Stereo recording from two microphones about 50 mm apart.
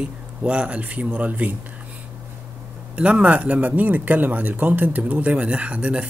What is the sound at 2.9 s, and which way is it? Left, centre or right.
Speech, right.